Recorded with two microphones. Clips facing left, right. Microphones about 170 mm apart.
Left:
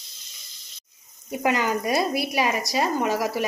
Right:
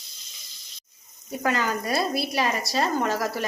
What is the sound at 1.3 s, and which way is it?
Speech, 15° left (ahead or behind).